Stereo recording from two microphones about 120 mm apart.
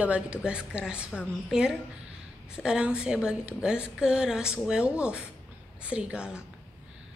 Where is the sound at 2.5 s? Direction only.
5° right (ahead or behind).